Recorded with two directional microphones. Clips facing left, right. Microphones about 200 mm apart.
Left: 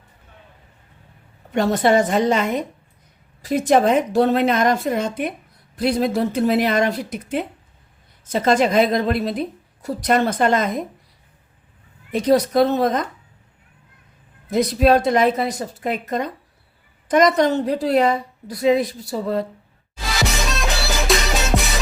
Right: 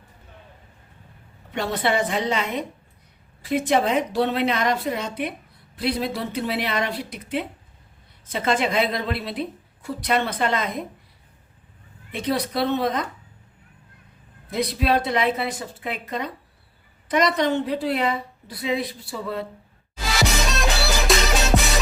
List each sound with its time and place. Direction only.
1.5 s a woman's voice: 45° left (ahead or behind)
12.1 s a woman's voice: 40° left (ahead or behind)
14.5 s a woman's voice: 45° left (ahead or behind)
20.5 s music: centre (ahead or behind)